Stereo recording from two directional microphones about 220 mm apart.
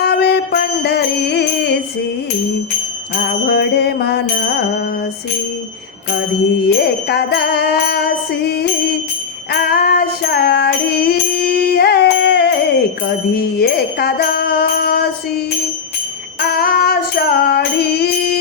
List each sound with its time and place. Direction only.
0.0 s music: 45° left (ahead or behind)
3.5 s music: 45° left (ahead or behind)
6.7 s music: 45° left (ahead or behind)